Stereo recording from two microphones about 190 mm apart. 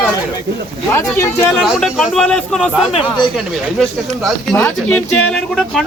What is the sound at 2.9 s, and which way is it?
Speech, 30° left (ahead or behind).